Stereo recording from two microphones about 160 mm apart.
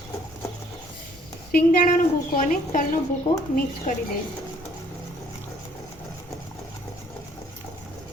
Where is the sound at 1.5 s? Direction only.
60° left (ahead or behind).